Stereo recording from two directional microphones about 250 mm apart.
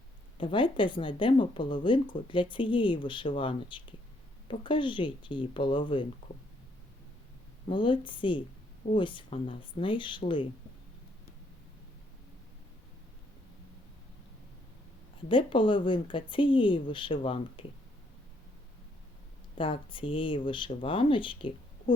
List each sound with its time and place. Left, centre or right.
0.3 s speech: centre
7.7 s speech: centre
15.3 s speech: centre
19.5 s speech: left